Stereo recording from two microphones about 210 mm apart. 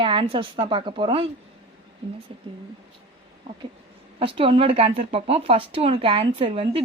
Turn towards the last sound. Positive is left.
turn(degrees=-25)  # may be behind; listen again after turning